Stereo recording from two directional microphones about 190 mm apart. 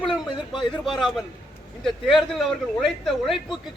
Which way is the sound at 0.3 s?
25° left (ahead or behind).